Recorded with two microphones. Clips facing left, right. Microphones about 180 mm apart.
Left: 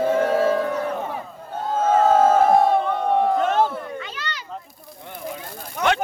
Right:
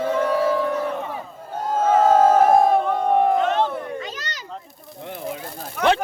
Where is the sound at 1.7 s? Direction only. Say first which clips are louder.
Right 1 dB; 10° right (ahead or behind).